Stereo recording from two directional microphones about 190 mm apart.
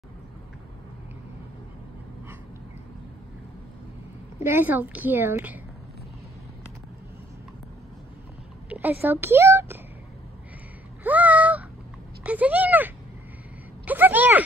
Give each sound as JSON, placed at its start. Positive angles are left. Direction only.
{"t": 4.4, "sound": "a woman's voice", "side_deg": -10}
{"t": 8.6, "sound": "a woman's voice", "side_deg": -10}
{"t": 11.1, "sound": "a sound", "side_deg": -10}